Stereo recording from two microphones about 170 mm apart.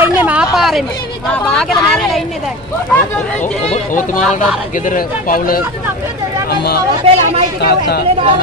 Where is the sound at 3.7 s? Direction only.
50° left (ahead or behind).